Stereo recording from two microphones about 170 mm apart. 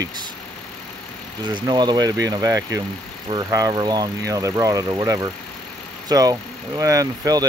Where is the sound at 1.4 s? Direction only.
25° right (ahead or behind).